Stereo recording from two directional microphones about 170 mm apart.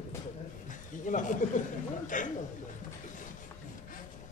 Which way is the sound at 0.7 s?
50° left (ahead or behind).